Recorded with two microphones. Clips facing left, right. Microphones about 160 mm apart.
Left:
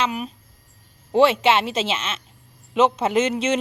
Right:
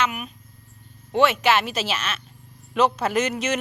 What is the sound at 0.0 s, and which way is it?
Speech, 30° left (ahead or behind).